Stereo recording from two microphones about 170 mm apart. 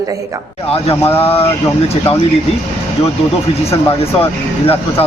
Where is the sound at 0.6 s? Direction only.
35° left (ahead or behind).